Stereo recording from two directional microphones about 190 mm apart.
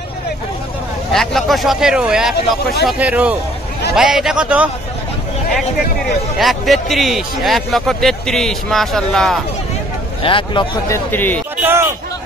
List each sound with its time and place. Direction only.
1.1 s speech: centre (ahead or behind)
6.3 s speech: centre (ahead or behind)
10.2 s a man's voice: 25° left (ahead or behind)
10.9 s speech: 10° left (ahead or behind)
11.6 s speech: 10° right (ahead or behind)